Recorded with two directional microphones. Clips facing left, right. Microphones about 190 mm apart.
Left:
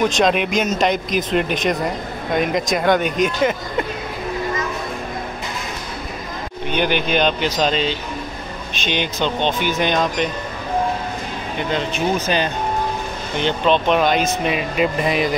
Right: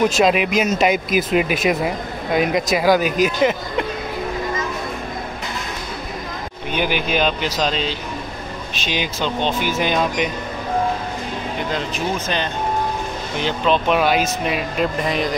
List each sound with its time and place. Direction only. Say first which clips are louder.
0.0 s speech: right 1 dB; 5° right (ahead or behind)
6.7 s speech: left 2 dB; 5° right (ahead or behind)
11.7 s speech: left 5 dB; 5° left (ahead or behind)